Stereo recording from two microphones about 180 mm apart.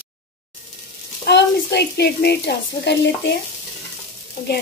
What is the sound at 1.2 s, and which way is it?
Speech, 70° left (ahead or behind).